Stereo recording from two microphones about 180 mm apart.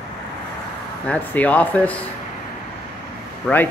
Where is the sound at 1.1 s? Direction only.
10° left (ahead or behind).